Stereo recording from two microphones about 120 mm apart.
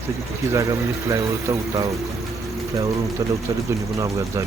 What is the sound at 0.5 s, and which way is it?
Speech, 30° right (ahead or behind).